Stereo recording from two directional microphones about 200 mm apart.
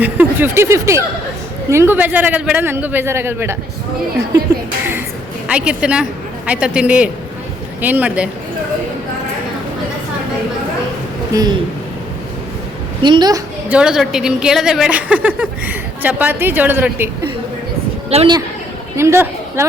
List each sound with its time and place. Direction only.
0.0 s a woman's voice: 10° right (ahead or behind)
5.5 s a woman's voice: 5° right (ahead or behind)
11.3 s speech: 20° right (ahead or behind)
13.0 s a woman's voice: 20° right (ahead or behind)
13.7 s a woman's voice: 5° right (ahead or behind)
18.1 s a woman's voice: 30° right (ahead or behind)
18.9 s speech: 15° right (ahead or behind)